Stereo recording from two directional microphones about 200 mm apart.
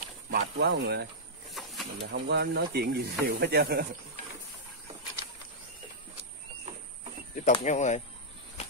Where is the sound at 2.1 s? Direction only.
55° right (ahead or behind).